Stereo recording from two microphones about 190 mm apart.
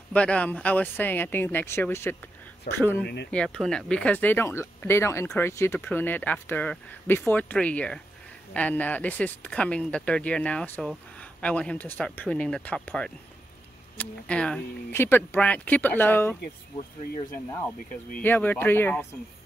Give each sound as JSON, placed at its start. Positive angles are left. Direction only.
{"t": 0.1, "sound": "speech", "side_deg": 5}
{"t": 18.2, "sound": "speech", "side_deg": 10}